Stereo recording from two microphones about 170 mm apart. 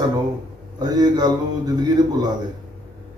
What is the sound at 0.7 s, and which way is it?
Speech, 25° right (ahead or behind).